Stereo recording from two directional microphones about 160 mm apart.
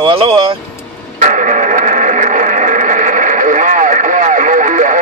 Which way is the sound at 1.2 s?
50° right (ahead or behind).